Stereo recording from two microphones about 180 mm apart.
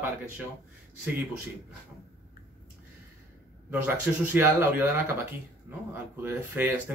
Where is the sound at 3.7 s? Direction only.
10° right (ahead or behind).